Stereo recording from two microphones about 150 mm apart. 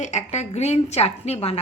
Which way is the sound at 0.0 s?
50° left (ahead or behind).